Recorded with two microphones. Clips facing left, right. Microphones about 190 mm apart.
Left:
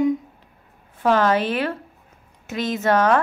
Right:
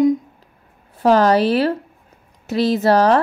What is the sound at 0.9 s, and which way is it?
A woman's voice, 35° right (ahead or behind).